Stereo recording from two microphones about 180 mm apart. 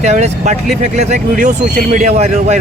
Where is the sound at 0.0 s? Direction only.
40° right (ahead or behind).